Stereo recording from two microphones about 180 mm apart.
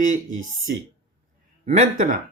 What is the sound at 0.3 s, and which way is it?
Speech, 90° right.